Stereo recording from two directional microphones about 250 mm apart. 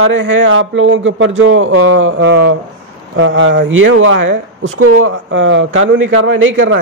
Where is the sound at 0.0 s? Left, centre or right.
Right.